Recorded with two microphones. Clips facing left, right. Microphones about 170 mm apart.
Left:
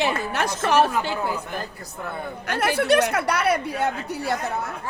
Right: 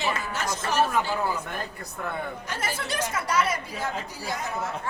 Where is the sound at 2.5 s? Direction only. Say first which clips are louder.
Left 16 dB; 65° left (ahead or behind).